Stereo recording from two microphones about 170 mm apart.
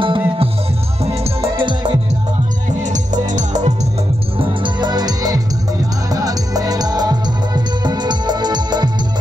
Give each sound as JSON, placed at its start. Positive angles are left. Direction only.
{"t": 0.0, "sound": "music", "side_deg": -30}
{"t": 2.8, "sound": "music", "side_deg": -45}
{"t": 4.4, "sound": "music", "side_deg": -25}